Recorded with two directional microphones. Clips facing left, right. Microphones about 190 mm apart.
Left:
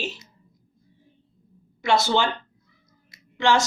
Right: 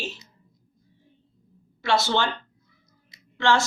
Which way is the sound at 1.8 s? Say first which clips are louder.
Left 2 dB; 15° left (ahead or behind).